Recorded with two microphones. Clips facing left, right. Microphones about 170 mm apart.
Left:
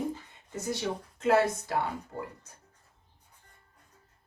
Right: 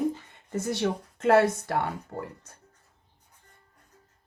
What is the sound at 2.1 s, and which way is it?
Speech, 50° right (ahead or behind).